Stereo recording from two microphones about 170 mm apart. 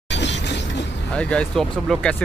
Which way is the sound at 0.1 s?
90° left.